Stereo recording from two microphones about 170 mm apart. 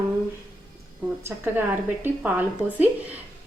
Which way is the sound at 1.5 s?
10° right (ahead or behind).